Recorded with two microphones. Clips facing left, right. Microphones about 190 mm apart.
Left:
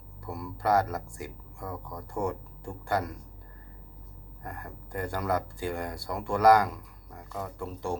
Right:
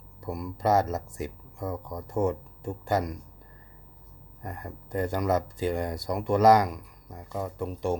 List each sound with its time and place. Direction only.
0.2 s speech: 15° right (ahead or behind)
4.4 s speech: 20° right (ahead or behind)